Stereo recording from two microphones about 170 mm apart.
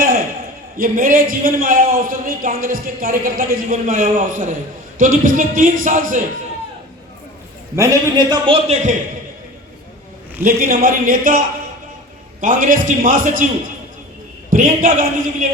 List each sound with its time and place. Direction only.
0.8 s a man's voice: 55° right (ahead or behind)
7.8 s a man's voice: 20° right (ahead or behind); by 9.0 s 40° right (ahead or behind)
10.4 s a man's voice: 55° right (ahead or behind)
12.4 s a man's voice: 50° right (ahead or behind)
14.5 s a man's voice: 50° right (ahead or behind)